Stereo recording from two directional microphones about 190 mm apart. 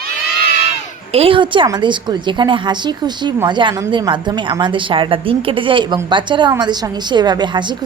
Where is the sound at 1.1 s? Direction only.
30° right (ahead or behind).